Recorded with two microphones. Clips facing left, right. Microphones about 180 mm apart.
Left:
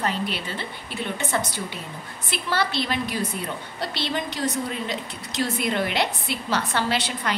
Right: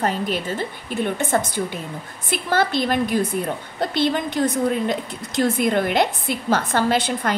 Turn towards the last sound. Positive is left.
turn(degrees=-50)  # may be behind; listen again after turning